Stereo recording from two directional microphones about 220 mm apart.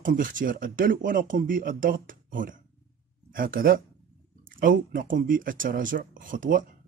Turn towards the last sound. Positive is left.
turn(degrees=-35)  # may be behind; listen again after turning